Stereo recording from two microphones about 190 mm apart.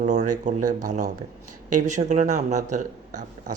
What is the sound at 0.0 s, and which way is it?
Speech, 40° right (ahead or behind).